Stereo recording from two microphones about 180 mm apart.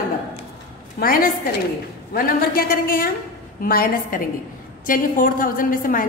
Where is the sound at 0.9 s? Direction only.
55° left (ahead or behind).